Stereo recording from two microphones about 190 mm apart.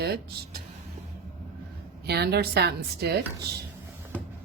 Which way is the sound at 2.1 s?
60° right (ahead or behind).